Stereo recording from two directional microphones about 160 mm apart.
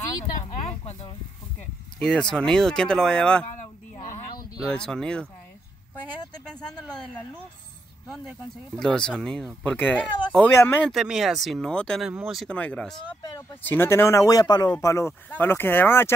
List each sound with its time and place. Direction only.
2.0 s speech: 5° left (ahead or behind)
4.6 s speech: 5° left (ahead or behind)
8.1 s speech: centre (ahead or behind)
10.9 s speech: centre (ahead or behind)
12.1 s speech: 5° right (ahead or behind)
12.4 s speech: 10° left (ahead or behind)